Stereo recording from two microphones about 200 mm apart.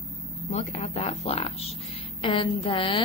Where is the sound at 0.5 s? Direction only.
35° left (ahead or behind).